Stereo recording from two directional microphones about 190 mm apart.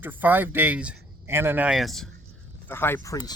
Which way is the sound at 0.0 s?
10° right (ahead or behind).